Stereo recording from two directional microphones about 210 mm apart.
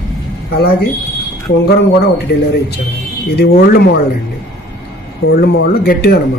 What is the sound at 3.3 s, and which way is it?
Speech, 45° left (ahead or behind).